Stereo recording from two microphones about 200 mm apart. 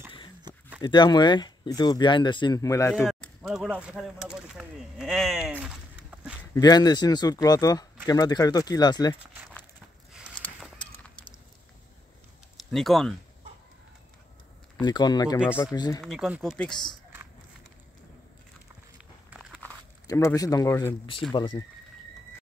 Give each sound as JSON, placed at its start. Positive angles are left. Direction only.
{"t": 0.7, "sound": "speech", "side_deg": 20}
{"t": 2.9, "sound": "speech", "side_deg": 0}
{"t": 6.5, "sound": "speech", "side_deg": 20}
{"t": 12.5, "sound": "speech", "side_deg": 0}
{"t": 14.8, "sound": "speech", "side_deg": 20}
{"t": 16.0, "sound": "speech", "side_deg": 0}
{"t": 19.6, "sound": "a sound", "side_deg": 10}
{"t": 20.1, "sound": "speech", "side_deg": 15}